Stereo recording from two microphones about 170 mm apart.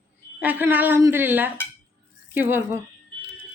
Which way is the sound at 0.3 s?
10° right (ahead or behind).